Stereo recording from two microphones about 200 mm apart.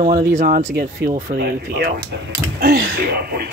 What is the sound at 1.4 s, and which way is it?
Speech, 55° right (ahead or behind).